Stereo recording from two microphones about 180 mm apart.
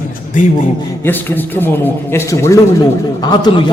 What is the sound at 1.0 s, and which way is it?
A man's voice, 10° left (ahead or behind).